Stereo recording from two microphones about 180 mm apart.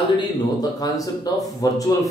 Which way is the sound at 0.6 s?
20° left (ahead or behind).